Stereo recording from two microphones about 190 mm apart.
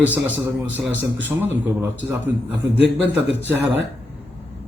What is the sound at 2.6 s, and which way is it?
Speech, 65° right (ahead or behind).